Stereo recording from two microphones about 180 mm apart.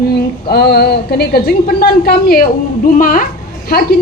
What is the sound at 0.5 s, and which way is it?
A woman's voice, 60° left (ahead or behind).